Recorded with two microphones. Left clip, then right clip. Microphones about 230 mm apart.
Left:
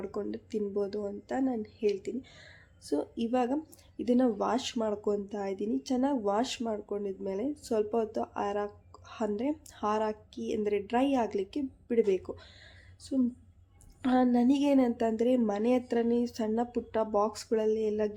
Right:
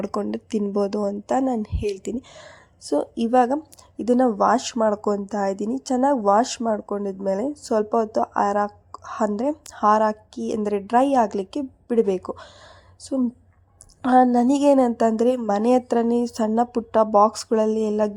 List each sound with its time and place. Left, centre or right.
0.0 s a woman's voice: right